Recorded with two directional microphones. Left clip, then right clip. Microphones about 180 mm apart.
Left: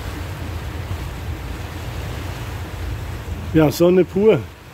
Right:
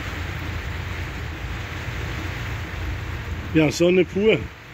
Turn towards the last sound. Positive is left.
turn(degrees=15)  # may be behind; listen again after turning